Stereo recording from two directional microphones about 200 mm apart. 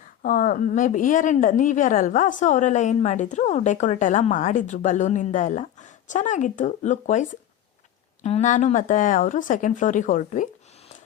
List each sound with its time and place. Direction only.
0.2 s a woman's voice: 45° left (ahead or behind)